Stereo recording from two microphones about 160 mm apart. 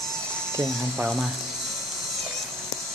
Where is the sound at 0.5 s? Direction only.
15° right (ahead or behind).